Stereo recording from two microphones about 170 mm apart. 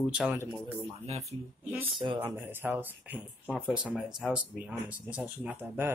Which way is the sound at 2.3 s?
10° right (ahead or behind).